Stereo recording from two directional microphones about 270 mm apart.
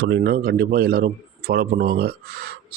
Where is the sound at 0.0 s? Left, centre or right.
Right.